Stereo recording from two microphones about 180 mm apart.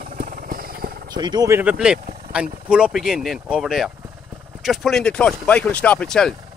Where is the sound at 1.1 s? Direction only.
25° right (ahead or behind).